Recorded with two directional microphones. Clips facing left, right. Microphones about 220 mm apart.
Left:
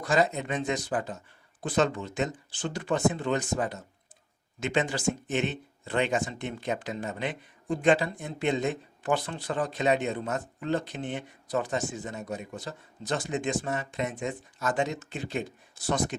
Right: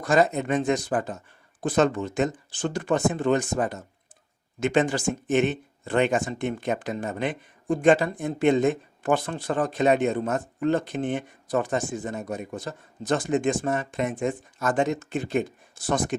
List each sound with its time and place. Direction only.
0.0 s speech: 50° right (ahead or behind)